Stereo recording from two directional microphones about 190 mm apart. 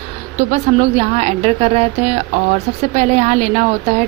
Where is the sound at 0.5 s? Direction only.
35° right (ahead or behind).